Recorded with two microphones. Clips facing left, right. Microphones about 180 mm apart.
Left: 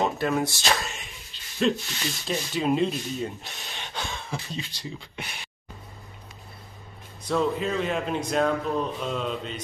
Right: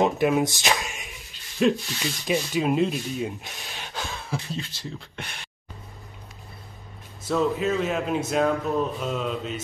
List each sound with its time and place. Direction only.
0.0 s speech: 15° right (ahead or behind); by 5.5 s 5° left (ahead or behind)
7.2 s speech: 5° right (ahead or behind)